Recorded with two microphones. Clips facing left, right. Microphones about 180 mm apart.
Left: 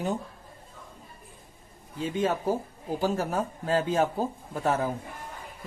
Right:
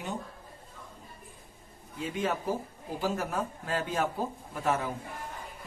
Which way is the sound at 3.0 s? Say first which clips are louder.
Left 3 dB; 30° left (ahead or behind).